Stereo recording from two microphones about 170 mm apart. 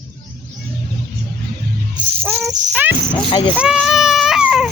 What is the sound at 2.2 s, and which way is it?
Music, 10° right (ahead or behind).